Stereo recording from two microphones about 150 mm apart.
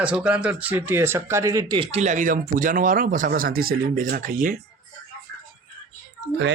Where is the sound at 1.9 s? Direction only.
50° right (ahead or behind).